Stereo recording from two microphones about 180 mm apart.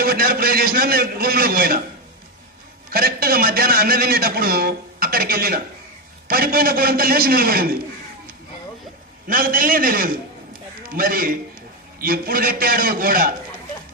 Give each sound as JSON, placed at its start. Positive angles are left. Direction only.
{"t": 0.0, "sound": "a man's voice", "side_deg": -55}
{"t": 2.9, "sound": "a man's voice", "side_deg": -55}
{"t": 9.2, "sound": "a man's voice", "side_deg": -50}